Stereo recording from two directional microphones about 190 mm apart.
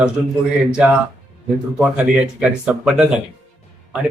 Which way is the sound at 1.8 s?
5° right (ahead or behind).